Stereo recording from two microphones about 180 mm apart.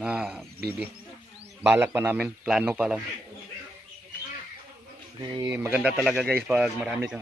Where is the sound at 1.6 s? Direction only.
10° right (ahead or behind).